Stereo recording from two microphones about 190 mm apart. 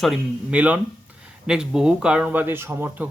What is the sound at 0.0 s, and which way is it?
Speech, 5° right (ahead or behind).